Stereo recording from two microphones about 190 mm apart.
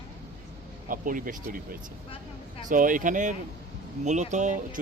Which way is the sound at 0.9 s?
45° right (ahead or behind).